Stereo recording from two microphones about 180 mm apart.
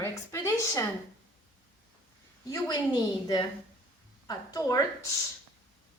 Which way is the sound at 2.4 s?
20° left (ahead or behind).